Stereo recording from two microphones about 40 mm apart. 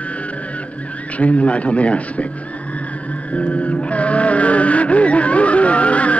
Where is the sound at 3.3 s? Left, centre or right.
Left.